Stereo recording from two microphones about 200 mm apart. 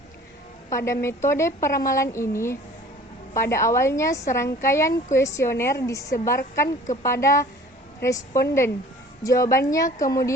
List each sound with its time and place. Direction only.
0.7 s a woman's voice: 15° left (ahead or behind)